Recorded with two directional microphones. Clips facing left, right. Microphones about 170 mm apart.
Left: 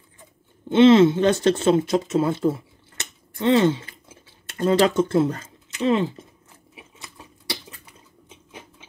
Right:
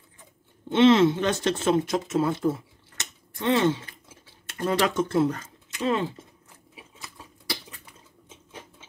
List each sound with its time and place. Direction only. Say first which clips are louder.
0.7 s speech: left 4 dB; 30° left (ahead or behind)
3.0 s a sound: left 6 dB; 30° left (ahead or behind)
6.7 s sewing machine: left 1 dB; 20° left (ahead or behind)
8.5 s patter: left 1 dB; 15° left (ahead or behind)